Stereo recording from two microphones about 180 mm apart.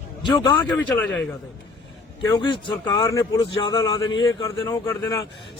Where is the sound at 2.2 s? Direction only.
25° left (ahead or behind).